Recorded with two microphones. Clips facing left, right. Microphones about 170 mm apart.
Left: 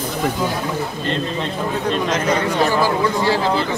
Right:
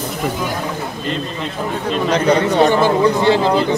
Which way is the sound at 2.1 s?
30° right (ahead or behind).